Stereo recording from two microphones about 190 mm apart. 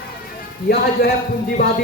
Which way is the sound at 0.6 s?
55° left (ahead or behind).